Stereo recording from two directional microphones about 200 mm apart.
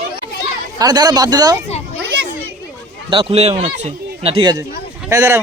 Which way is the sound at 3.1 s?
25° right (ahead or behind).